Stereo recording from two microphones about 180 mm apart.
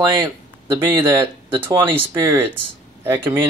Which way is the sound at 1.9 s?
30° right (ahead or behind).